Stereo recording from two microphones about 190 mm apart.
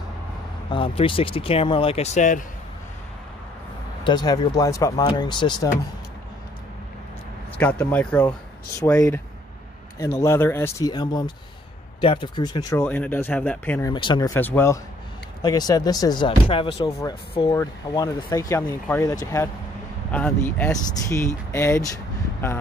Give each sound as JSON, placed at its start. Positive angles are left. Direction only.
{"t": 0.7, "sound": "speech", "side_deg": 25}
{"t": 4.0, "sound": "speech", "side_deg": 20}
{"t": 7.5, "sound": "speech", "side_deg": 10}
{"t": 8.3, "sound": "speech", "side_deg": 15}
{"t": 12.8, "sound": "speech", "side_deg": 10}
{"t": 13.9, "sound": "speech", "side_deg": 25}